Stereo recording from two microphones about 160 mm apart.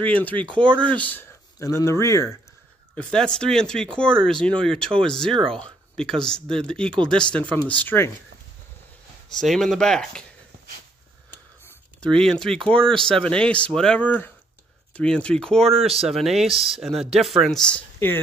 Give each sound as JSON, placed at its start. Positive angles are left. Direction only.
{"t": 0.0, "sound": "speech", "side_deg": 10}
{"t": 3.0, "sound": "speech", "side_deg": 5}
{"t": 9.3, "sound": "speech", "side_deg": 0}
{"t": 12.0, "sound": "speech", "side_deg": 5}